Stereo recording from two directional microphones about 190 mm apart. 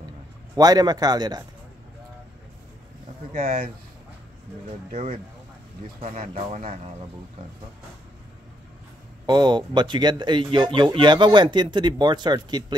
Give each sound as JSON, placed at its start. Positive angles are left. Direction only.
{"t": 0.6, "sound": "speech", "side_deg": -20}
{"t": 3.3, "sound": "speech", "side_deg": -40}
{"t": 5.9, "sound": "speech", "side_deg": -35}
{"t": 9.2, "sound": "speech", "side_deg": -20}